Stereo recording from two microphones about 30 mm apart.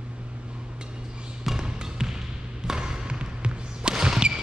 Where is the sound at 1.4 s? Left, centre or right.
Right.